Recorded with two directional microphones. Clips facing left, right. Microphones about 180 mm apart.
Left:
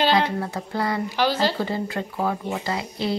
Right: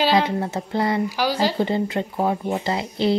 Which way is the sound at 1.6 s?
25° right (ahead or behind).